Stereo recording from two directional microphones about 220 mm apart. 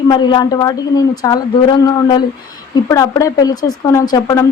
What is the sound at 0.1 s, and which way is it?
A woman's voice, 20° left (ahead or behind).